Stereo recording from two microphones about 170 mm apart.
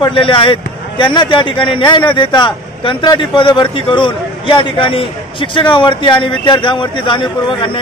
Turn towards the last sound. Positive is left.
turn(degrees=30)  # may be behind; listen again after turning